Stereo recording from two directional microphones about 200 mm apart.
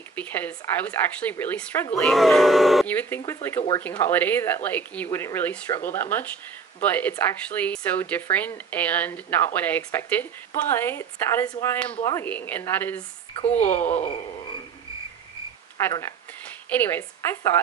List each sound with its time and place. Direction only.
0.1 s speech: 10° left (ahead or behind)
3.6 s speech: 30° left (ahead or behind)
3.9 s speech: 10° left (ahead or behind)
13.3 s speech: 30° left (ahead or behind)
15.8 s speech: 15° left (ahead or behind)